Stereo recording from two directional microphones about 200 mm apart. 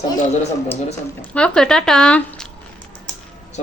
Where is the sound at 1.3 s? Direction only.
5° left (ahead or behind).